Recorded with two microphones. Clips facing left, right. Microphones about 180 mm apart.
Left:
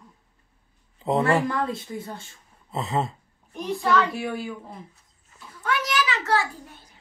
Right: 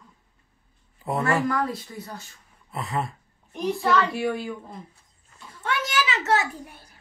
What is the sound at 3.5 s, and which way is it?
Speech, centre (ahead or behind).